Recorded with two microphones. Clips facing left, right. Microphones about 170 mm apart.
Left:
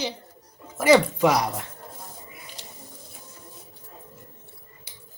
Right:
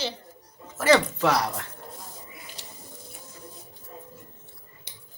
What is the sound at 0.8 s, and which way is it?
Speech, 15° left (ahead or behind).